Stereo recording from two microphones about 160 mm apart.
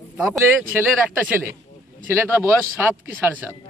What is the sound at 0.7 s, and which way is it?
A man's voice, 15° right (ahead or behind).